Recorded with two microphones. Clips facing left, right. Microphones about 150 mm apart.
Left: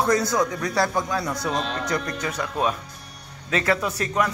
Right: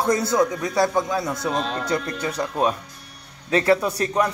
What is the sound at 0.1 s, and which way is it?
A man's voice, 25° right (ahead or behind).